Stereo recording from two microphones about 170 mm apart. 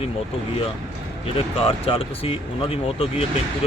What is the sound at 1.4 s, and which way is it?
Speech, 35° left (ahead or behind).